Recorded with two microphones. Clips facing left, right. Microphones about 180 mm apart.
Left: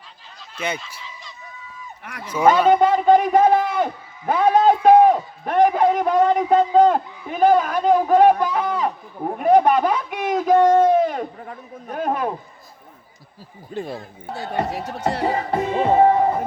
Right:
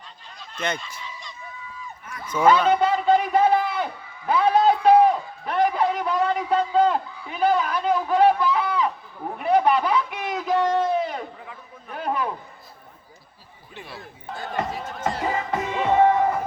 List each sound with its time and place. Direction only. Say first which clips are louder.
0.5 s fowl: left 1 dB; 5° left (ahead or behind)
2.2 s speech: left 2 dB; 10° left (ahead or behind)
2.6 s a sound: left 5 dB; 45° left (ahead or behind)
4.3 s a man's voice: left 3 dB; 45° left (ahead or behind)
13.7 s a man's voice: left 11 dB; 45° left (ahead or behind)
14.7 s speech: left 4 dB; 70° left (ahead or behind)
15.2 s music: left 5 dB; 35° left (ahead or behind)